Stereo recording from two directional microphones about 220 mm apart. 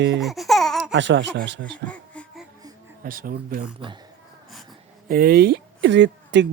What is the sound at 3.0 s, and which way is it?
Speech, 40° right (ahead or behind).